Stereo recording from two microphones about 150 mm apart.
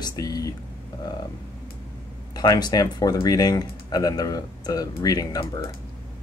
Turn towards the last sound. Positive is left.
turn(degrees=25)  # may be behind; listen again after turning